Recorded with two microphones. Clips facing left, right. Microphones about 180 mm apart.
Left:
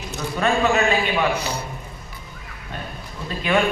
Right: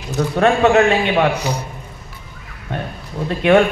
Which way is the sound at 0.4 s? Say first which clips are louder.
Right 6 dB; 70° right (ahead or behind).